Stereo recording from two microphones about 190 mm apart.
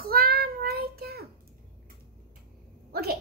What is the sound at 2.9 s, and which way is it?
Speech, 55° right (ahead or behind).